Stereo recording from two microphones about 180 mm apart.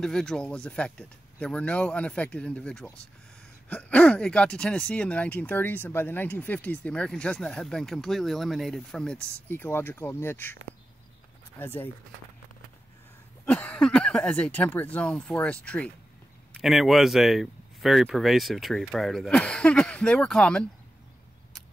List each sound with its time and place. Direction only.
0.0 s speech: 5° left (ahead or behind)
13.5 s speech: 5° left (ahead or behind)